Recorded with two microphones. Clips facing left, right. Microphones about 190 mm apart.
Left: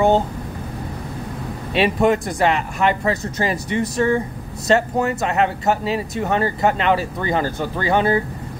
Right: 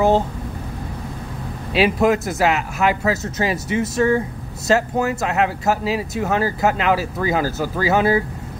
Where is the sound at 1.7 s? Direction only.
Centre (ahead or behind).